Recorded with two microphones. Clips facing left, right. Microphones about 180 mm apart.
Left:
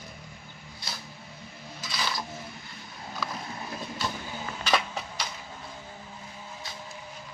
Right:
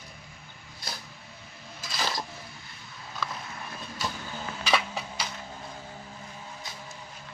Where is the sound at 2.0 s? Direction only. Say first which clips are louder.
Right 1 dB; 40° right (ahead or behind).